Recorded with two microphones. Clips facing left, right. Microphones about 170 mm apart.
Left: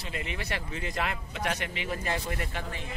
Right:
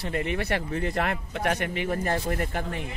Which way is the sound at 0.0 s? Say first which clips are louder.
Right 8 dB; 55° right (ahead or behind).